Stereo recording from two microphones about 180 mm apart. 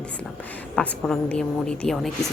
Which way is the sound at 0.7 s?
5° left (ahead or behind).